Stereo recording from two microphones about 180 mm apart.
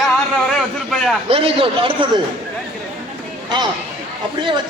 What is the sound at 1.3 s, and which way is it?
Speech, 30° right (ahead or behind).